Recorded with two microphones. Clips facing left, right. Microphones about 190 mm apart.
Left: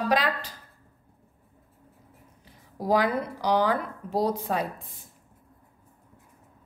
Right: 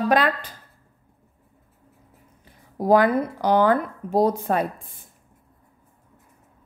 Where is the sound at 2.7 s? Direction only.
55° right (ahead or behind).